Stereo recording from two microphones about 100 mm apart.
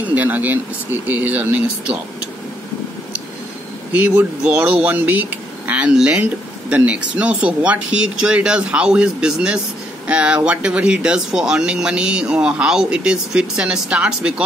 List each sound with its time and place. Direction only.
0.1 s speech: 15° right (ahead or behind)
3.9 s speech: 15° right (ahead or behind)